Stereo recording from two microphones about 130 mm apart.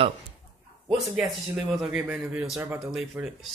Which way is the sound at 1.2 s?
5° right (ahead or behind).